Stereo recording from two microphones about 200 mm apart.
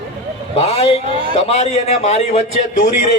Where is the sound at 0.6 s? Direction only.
30° left (ahead or behind).